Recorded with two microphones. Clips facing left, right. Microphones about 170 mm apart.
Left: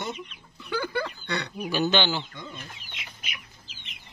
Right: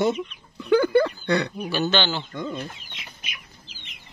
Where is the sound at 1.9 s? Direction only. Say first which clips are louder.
Right 1 dB; 15° left (ahead or behind).